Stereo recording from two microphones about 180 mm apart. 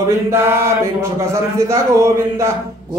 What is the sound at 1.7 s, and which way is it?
Speech, 15° right (ahead or behind).